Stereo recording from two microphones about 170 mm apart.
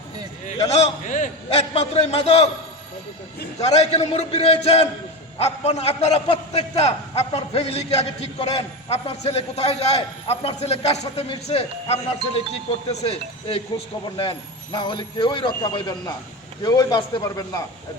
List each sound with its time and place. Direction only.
0.7 s a man's voice: 40° left (ahead or behind)
1.7 s a man's voice: 35° left (ahead or behind)
3.6 s a man's voice: 40° left (ahead or behind); by 17.6 s 20° left (ahead or behind)